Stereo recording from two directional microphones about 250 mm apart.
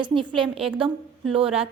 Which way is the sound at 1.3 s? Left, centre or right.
Right.